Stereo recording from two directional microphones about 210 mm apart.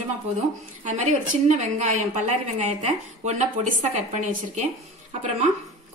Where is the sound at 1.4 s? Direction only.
35° right (ahead or behind).